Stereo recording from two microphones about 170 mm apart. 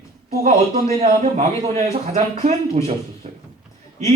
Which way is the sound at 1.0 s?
40° right (ahead or behind).